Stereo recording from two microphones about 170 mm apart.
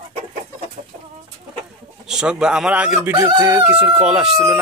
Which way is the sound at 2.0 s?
5° right (ahead or behind).